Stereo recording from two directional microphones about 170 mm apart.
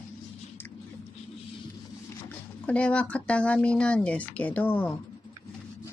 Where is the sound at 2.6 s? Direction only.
5° left (ahead or behind).